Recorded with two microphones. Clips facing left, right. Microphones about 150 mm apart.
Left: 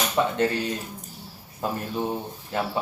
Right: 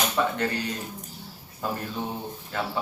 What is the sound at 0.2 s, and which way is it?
Speech, 20° left (ahead or behind).